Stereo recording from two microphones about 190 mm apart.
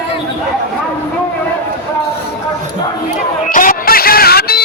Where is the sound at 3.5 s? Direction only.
45° left (ahead or behind).